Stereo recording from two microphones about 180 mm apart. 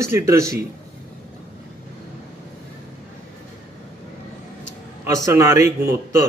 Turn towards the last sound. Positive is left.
turn(degrees=-15)  # may be behind; listen again after turning